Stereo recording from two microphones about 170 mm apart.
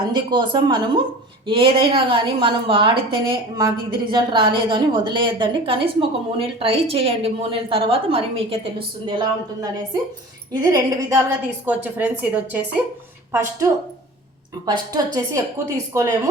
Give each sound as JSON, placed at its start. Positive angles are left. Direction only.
{"t": 0.0, "sound": "a woman's voice", "side_deg": -25}
{"t": 14.7, "sound": "a woman's voice", "side_deg": -25}